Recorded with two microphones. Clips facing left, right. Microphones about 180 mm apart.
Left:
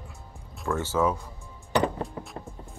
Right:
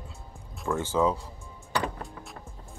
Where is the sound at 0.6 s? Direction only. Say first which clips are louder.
Even; 15° right (ahead or behind).